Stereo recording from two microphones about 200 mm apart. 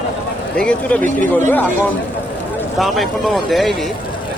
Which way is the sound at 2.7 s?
Centre (ahead or behind).